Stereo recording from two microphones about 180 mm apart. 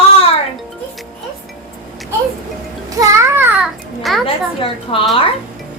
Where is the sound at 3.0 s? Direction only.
15° right (ahead or behind); by 4.2 s centre (ahead or behind).